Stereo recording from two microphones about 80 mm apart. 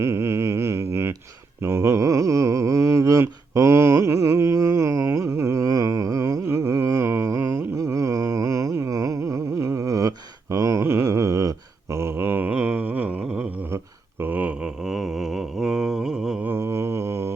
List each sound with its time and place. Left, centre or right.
0.0 s a sound: right
14.2 s mantra: right
14.8 s mantra: centre
16.4 s mantra: right